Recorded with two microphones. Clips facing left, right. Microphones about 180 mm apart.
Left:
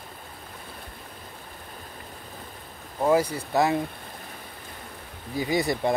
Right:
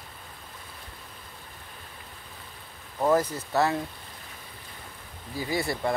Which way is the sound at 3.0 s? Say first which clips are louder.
Left 2 dB; 10° left (ahead or behind).